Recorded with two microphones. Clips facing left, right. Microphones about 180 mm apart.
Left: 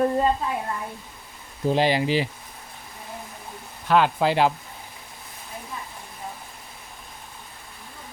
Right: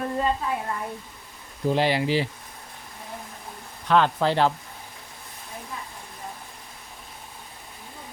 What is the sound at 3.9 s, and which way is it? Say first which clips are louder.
Speech: left 1 dB; 10° left (ahead or behind).